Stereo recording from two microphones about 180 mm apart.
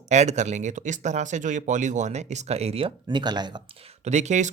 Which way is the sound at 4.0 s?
40° right (ahead or behind).